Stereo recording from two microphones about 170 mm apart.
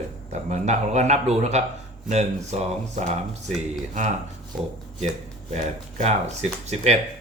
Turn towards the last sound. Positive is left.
turn(degrees=-40)  # may be behind; listen again after turning